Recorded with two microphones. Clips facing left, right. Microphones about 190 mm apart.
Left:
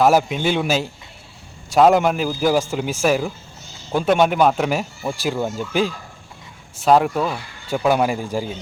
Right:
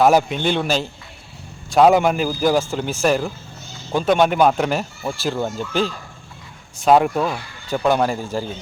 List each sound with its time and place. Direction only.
0.0 s a man's voice: 5° left (ahead or behind)